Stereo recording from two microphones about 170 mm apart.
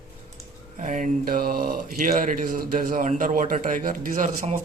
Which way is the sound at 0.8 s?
50° right (ahead or behind).